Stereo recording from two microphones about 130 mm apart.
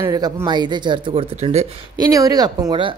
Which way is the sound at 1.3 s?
55° right (ahead or behind).